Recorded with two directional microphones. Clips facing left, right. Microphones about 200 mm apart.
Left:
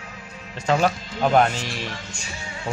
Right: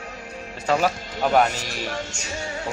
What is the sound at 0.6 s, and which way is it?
Speech, 5° right (ahead or behind).